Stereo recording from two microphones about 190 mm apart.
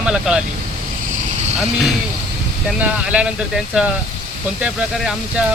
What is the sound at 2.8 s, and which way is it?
Speech, 5° right (ahead or behind).